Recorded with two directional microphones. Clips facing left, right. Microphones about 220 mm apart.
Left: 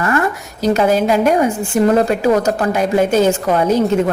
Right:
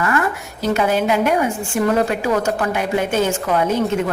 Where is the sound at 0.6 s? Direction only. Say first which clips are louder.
Left 4 dB; 40° left (ahead or behind).